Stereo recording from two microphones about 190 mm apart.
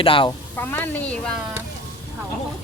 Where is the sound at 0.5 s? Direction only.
10° left (ahead or behind).